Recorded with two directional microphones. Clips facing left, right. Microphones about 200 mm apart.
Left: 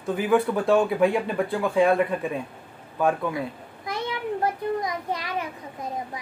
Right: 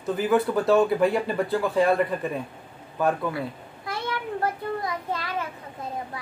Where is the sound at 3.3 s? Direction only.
15° left (ahead or behind).